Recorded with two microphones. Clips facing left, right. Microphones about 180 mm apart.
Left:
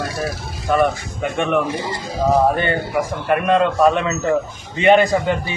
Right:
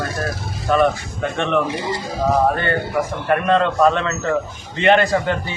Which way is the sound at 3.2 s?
10° left (ahead or behind).